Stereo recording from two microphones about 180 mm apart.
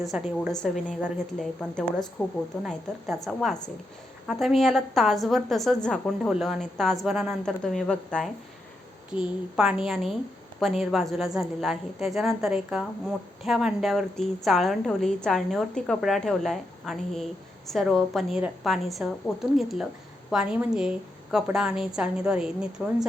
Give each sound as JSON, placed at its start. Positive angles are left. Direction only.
{"t": 0.0, "sound": "a woman's voice", "side_deg": 0}
{"t": 9.2, "sound": "a woman's voice", "side_deg": -5}